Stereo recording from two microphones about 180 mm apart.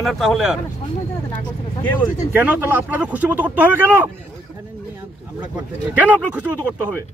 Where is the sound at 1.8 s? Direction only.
10° left (ahead or behind).